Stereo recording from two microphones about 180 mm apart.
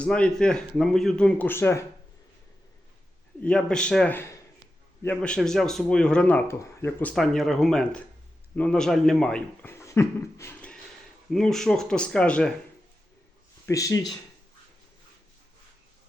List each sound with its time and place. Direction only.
0.0 s speech: 5° left (ahead or behind)
3.4 s speech: 5° left (ahead or behind)
13.7 s speech: 20° left (ahead or behind)